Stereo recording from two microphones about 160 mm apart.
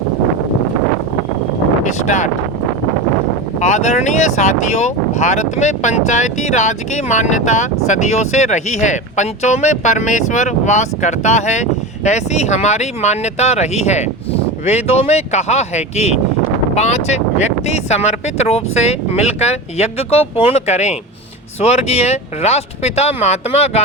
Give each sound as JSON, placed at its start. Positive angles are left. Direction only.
{"t": 1.8, "sound": "speech", "side_deg": 50}
{"t": 3.6, "sound": "speech", "side_deg": 45}